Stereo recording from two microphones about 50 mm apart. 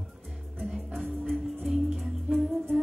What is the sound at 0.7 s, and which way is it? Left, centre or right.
Music, centre.